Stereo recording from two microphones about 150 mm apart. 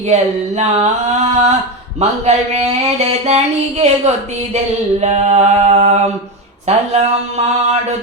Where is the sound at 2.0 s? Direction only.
50° right (ahead or behind).